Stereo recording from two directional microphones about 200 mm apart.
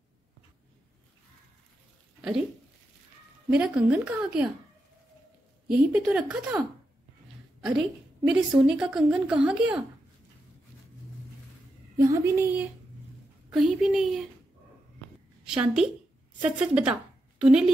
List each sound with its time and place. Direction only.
3.4 s a woman's voice: 5° right (ahead or behind)
5.7 s a woman's voice: 10° right (ahead or behind)
8.3 s a woman's voice: 5° right (ahead or behind)
12.0 s a woman's voice: 15° right (ahead or behind)
13.5 s a woman's voice: centre (ahead or behind)
15.4 s a woman's voice: 5° right (ahead or behind)